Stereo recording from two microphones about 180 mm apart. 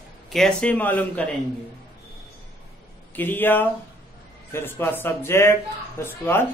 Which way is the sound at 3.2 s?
10° left (ahead or behind).